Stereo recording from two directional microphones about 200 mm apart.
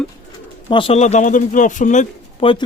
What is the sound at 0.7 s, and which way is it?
Speech, 25° left (ahead or behind).